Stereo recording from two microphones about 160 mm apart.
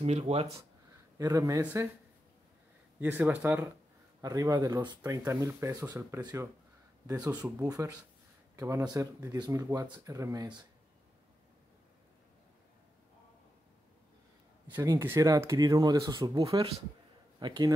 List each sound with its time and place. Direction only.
0.0 s speech: 40° right (ahead or behind)
1.1 s speech: 20° right (ahead or behind)
3.0 s speech: 10° right (ahead or behind)
4.2 s speech: 20° right (ahead or behind)
14.7 s speech: 15° right (ahead or behind)